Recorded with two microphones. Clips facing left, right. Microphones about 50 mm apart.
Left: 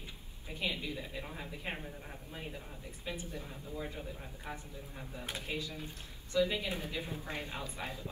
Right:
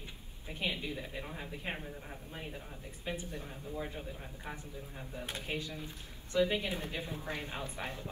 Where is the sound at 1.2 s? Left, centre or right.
Centre.